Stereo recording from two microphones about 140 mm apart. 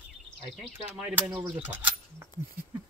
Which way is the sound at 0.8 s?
10° right (ahead or behind).